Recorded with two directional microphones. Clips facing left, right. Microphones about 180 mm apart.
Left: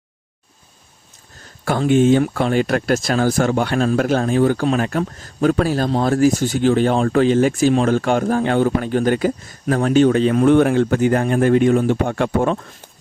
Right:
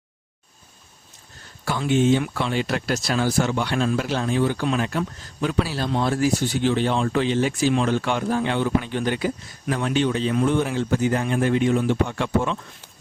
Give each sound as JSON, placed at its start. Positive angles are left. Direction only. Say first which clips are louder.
{"t": 1.8, "sound": "speech", "louder": "left 5 dB", "side_deg": 50}